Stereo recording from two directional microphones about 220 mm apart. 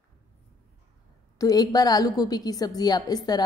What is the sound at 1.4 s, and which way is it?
A woman's voice, 15° left (ahead or behind).